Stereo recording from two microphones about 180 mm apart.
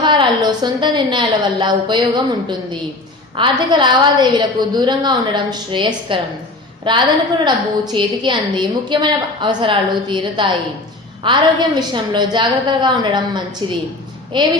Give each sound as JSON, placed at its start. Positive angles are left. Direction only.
{"t": 0.0, "sound": "a woman's voice", "side_deg": -25}